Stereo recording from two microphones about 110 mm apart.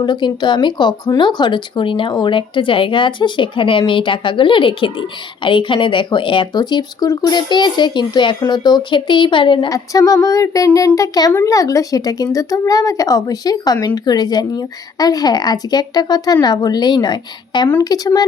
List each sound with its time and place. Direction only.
0.0 s speech: 45° left (ahead or behind)
9.6 s speech: 30° left (ahead or behind)